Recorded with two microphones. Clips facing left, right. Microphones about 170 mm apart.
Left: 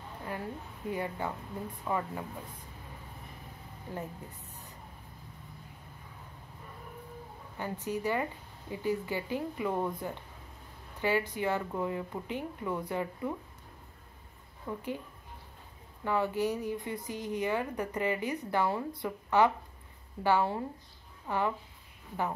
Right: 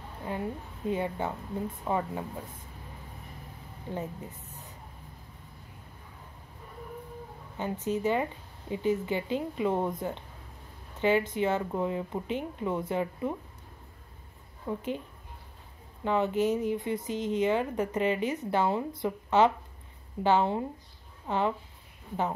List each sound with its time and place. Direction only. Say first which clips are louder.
0.3 s speech: right 5 dB; 20° right (ahead or behind)
7.5 s speech: right 4 dB; 20° right (ahead or behind)
14.7 s speech: right 4 dB; 20° right (ahead or behind)
16.0 s speech: right 3 dB; 20° right (ahead or behind)